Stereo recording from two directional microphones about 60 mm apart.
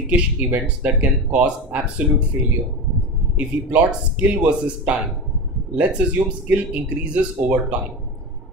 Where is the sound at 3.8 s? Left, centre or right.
Centre.